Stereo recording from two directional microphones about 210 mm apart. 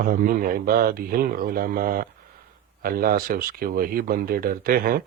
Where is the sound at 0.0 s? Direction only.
45° right (ahead or behind).